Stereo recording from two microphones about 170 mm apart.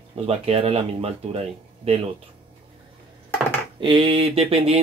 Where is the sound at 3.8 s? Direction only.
30° right (ahead or behind).